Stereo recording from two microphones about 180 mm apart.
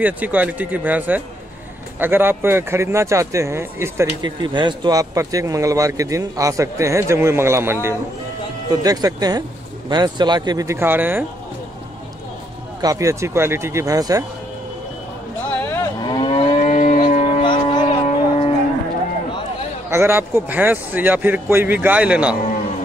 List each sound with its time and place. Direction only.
0.0 s speech: 10° right (ahead or behind)
12.8 s speech: 15° right (ahead or behind)
15.6 s cattle: 10° left (ahead or behind)
16.0 s moo: 25° left (ahead or behind); by 17.2 s 45° left (ahead or behind)
17.2 s music: 30° left (ahead or behind)
19.9 s speech: 10° right (ahead or behind)